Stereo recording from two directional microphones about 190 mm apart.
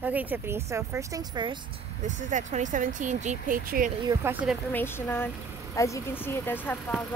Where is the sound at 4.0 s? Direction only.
15° right (ahead or behind).